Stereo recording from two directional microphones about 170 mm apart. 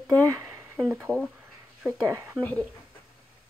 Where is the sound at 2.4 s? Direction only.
10° left (ahead or behind).